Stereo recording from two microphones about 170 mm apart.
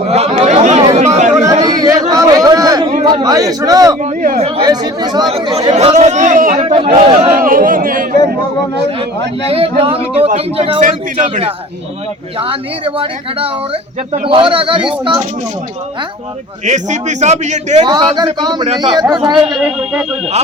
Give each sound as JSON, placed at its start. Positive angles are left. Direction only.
{"t": 0.0, "sound": "chatter", "side_deg": -40}
{"t": 0.9, "sound": "a sound", "side_deg": -40}
{"t": 1.7, "sound": "a sound", "side_deg": -20}
{"t": 3.0, "sound": "speech", "side_deg": -25}
{"t": 4.0, "sound": "a man's voice", "side_deg": -45}
{"t": 4.6, "sound": "speech", "side_deg": -25}
{"t": 5.5, "sound": "a man's voice", "side_deg": -35}
{"t": 6.6, "sound": "speech", "side_deg": -30}
{"t": 7.3, "sound": "a man's voice", "side_deg": -55}
{"t": 9.5, "sound": "a man's voice", "side_deg": -35}
{"t": 12.4, "sound": "speech", "side_deg": -30}
{"t": 16.6, "sound": "a man's voice", "side_deg": -45}
{"t": 17.8, "sound": "speech", "side_deg": -25}
{"t": 19.5, "sound": "a man's voice", "side_deg": 0}